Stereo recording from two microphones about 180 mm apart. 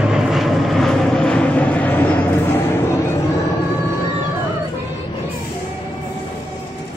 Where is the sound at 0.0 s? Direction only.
5° right (ahead or behind); by 3.0 s 10° left (ahead or behind).